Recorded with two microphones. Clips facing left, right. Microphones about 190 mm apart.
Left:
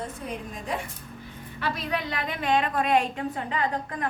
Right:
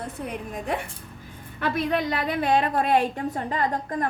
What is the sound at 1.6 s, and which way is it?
A woman's voice, 55° right (ahead or behind).